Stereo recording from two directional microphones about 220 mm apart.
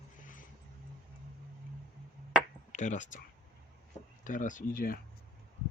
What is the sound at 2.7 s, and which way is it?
Speech, 35° left (ahead or behind).